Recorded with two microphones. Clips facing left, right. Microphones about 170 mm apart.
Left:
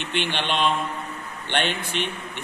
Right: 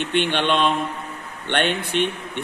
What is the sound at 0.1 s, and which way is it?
A man's voice, 55° right (ahead or behind).